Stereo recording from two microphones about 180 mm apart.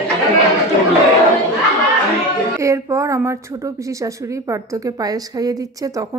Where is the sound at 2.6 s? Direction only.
15° right (ahead or behind).